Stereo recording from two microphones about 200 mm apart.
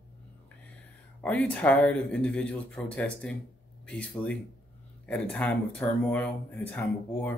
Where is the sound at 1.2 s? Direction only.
5° left (ahead or behind).